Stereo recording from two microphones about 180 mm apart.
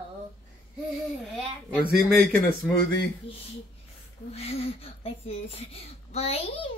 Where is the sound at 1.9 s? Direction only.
Centre (ahead or behind).